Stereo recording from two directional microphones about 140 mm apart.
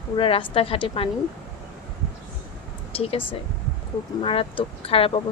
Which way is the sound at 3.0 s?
40° left (ahead or behind).